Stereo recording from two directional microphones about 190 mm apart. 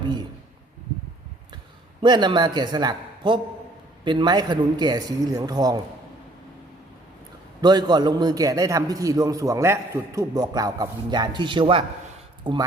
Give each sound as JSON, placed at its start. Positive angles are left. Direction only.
{"t": 2.0, "sound": "a man's voice", "side_deg": -25}
{"t": 7.6, "sound": "a man's voice", "side_deg": -20}